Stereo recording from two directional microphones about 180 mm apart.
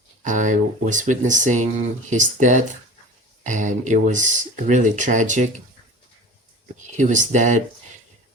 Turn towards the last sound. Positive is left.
turn(degrees=-45)  # may be behind; listen again after turning